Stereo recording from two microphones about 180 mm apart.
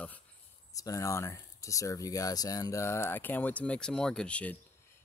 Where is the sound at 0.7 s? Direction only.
20° left (ahead or behind).